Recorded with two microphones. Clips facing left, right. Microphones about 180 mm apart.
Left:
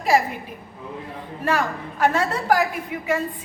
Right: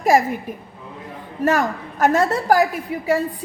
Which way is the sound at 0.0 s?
45° right (ahead or behind).